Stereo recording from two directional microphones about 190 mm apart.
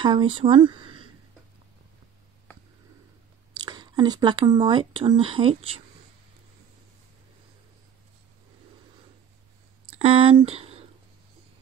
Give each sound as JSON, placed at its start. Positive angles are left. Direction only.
{"t": 0.0, "sound": "speech", "side_deg": -25}
{"t": 3.5, "sound": "speech", "side_deg": -25}
{"t": 9.8, "sound": "speech", "side_deg": -30}